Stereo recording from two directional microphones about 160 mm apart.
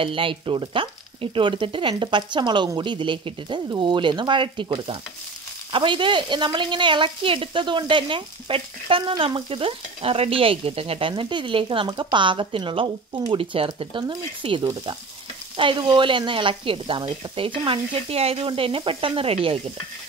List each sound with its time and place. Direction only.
0.0 s speech: 35° right (ahead or behind)